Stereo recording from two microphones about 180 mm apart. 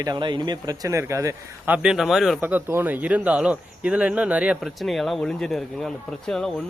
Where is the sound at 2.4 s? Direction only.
10° right (ahead or behind).